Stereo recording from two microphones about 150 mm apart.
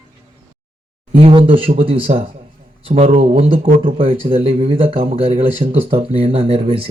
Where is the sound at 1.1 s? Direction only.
35° right (ahead or behind).